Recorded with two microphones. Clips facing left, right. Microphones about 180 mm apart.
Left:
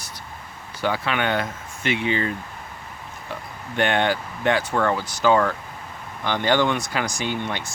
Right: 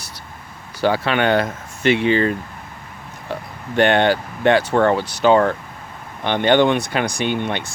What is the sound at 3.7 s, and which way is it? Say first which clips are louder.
Speech: right 6 dB; 70° right (ahead or behind).